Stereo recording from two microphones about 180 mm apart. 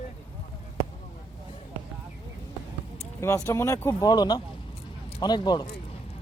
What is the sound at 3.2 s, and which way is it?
Speech, 15° left (ahead or behind).